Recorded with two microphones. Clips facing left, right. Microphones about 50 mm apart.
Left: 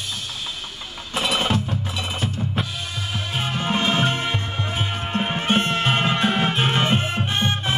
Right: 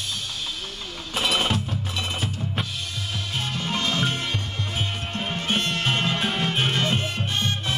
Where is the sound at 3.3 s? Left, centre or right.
Left.